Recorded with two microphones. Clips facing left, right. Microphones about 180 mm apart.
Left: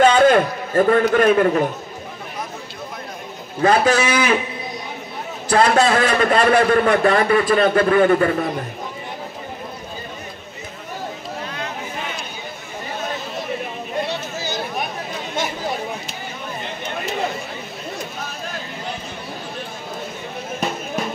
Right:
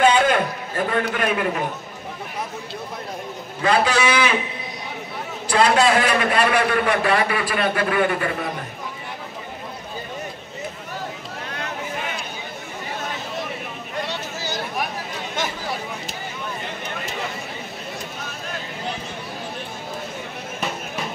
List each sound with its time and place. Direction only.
0.0 s a sound: 40° left (ahead or behind)
1.1 s a man's voice: 40° left (ahead or behind)
3.6 s a man's voice: 45° left (ahead or behind)
5.5 s a man's voice: 45° left (ahead or behind)